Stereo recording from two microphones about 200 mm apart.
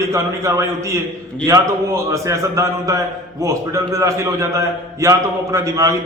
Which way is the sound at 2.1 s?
15° right (ahead or behind).